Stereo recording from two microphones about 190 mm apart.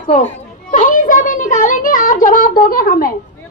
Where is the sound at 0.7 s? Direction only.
45° left (ahead or behind).